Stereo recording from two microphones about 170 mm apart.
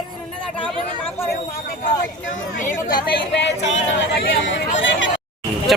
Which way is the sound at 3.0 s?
75° left (ahead or behind).